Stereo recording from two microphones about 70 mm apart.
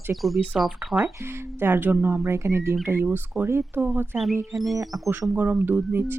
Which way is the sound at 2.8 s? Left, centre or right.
Right.